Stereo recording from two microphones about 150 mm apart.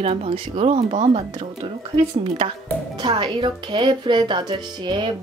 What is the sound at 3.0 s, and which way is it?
Speech, 30° right (ahead or behind).